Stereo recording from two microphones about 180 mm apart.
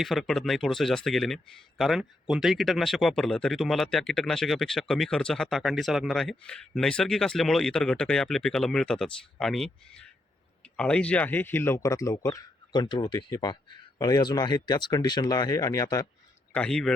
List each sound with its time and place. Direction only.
0.0 s speech: centre (ahead or behind); by 16.0 s 20° left (ahead or behind)
16.5 s a man's voice: 5° left (ahead or behind)